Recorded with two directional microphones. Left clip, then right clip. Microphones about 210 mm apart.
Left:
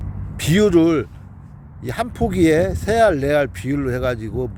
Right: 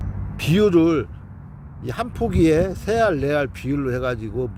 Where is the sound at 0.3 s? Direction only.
20° left (ahead or behind).